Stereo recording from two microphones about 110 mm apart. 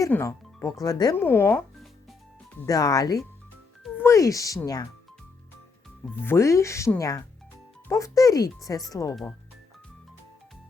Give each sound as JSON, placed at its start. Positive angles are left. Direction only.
{"t": 0.1, "sound": "speech", "side_deg": 25}
{"t": 1.1, "sound": "speech", "side_deg": 20}
{"t": 2.6, "sound": "speech", "side_deg": 35}
{"t": 6.2, "sound": "speech", "side_deg": 25}